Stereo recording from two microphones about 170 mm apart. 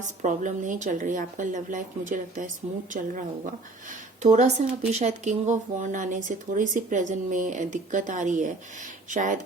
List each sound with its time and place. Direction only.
0.0 s speech: 45° right (ahead or behind)